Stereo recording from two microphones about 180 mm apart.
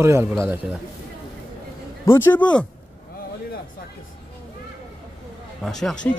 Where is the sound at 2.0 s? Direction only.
15° left (ahead or behind).